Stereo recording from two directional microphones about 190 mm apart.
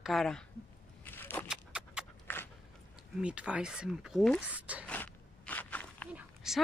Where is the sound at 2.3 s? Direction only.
10° left (ahead or behind).